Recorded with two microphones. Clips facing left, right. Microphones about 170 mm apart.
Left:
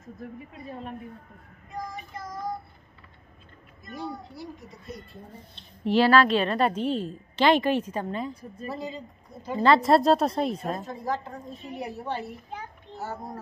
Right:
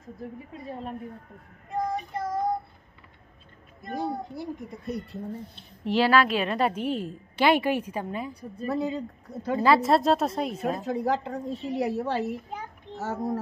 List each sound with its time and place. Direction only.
1.7 s child singing: 60° right (ahead or behind)
3.8 s a woman's voice: 45° right (ahead or behind); by 5.2 s 65° right (ahead or behind)
5.6 s a woman's voice: 10° right (ahead or behind)
8.6 s speech: 60° right (ahead or behind)
9.6 s a woman's voice: 5° right (ahead or behind)
10.8 s a woman's voice: 75° right (ahead or behind); by 13.4 s 90° right